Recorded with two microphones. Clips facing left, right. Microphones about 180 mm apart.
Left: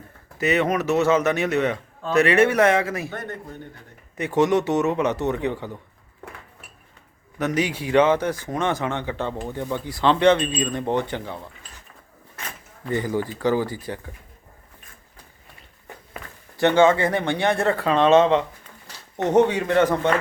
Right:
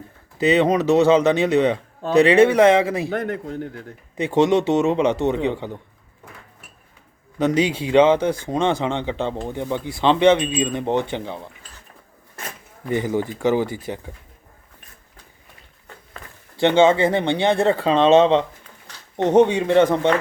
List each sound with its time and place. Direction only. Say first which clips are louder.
0.4 s speech: right 5 dB; 30° right (ahead or behind)
3.1 s a man's voice: right 8 dB; 90° right
4.2 s speech: right 2 dB; 30° right (ahead or behind)
7.3 s speech: right 5 dB; 30° right (ahead or behind)
12.9 s speech: right 2 dB; 20° right (ahead or behind)
16.6 s speech: right 2 dB; 25° right (ahead or behind)